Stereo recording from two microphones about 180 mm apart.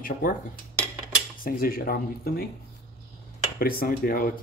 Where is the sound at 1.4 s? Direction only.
55° left (ahead or behind).